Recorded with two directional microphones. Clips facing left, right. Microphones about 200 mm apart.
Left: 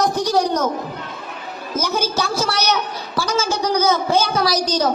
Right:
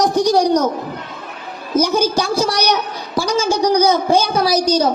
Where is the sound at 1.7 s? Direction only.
15° right (ahead or behind).